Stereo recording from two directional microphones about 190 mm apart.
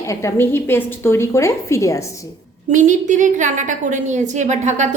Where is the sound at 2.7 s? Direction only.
40° right (ahead or behind).